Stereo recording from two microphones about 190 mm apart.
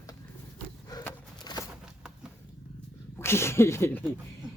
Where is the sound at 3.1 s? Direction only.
15° left (ahead or behind).